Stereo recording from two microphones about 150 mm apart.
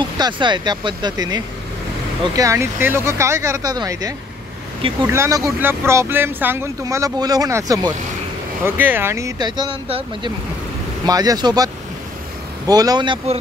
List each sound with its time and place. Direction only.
0.2 s speech: 30° right (ahead or behind)
8.6 s speech: 15° right (ahead or behind); by 10.3 s 35° right (ahead or behind)
11.1 s speech: 25° right (ahead or behind)